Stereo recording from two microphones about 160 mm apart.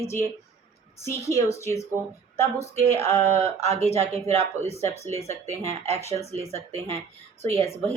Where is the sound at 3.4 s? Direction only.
40° right (ahead or behind).